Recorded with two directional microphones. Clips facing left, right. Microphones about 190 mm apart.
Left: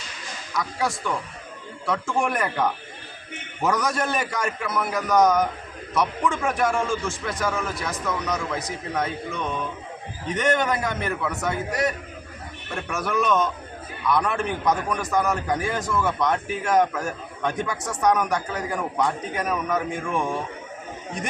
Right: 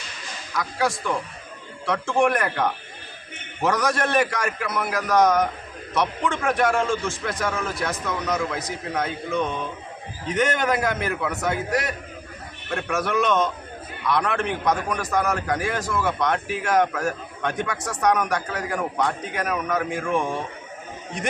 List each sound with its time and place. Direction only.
0.5 s a man's voice: centre (ahead or behind)
12.9 s a man's voice: centre (ahead or behind)